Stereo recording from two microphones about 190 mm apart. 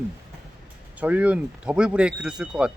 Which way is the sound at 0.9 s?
10° right (ahead or behind).